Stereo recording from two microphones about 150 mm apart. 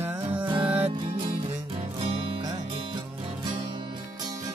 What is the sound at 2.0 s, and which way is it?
Music, 40° right (ahead or behind).